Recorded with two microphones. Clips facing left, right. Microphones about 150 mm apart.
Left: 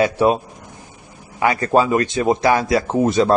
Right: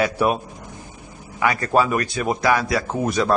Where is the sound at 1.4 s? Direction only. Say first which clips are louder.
Left 3 dB; 25° left (ahead or behind).